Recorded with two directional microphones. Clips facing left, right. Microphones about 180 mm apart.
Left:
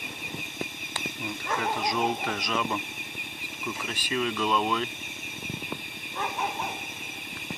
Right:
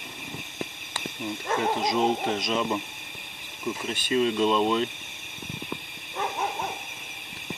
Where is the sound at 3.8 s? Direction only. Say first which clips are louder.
Right 6 dB; 30° right (ahead or behind).